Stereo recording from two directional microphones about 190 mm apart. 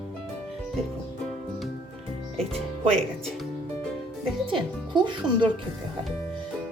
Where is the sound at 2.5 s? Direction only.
5° left (ahead or behind).